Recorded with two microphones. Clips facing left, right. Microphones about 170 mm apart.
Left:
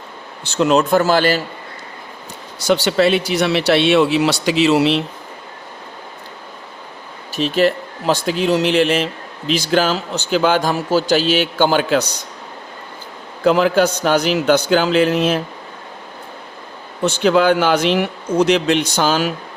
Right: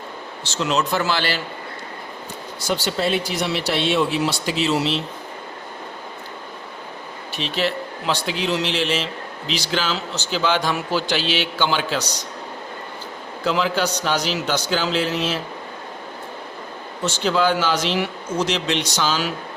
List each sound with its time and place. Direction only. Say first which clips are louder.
0.5 s a man's voice: left 8 dB; 55° left (ahead or behind)
2.6 s speech: left 8 dB; 75° left (ahead or behind)
7.3 s a man's voice: left 8 dB; 45° left (ahead or behind)
13.4 s a man's voice: left 8 dB; 50° left (ahead or behind)
17.0 s speech: left 6 dB; 55° left (ahead or behind)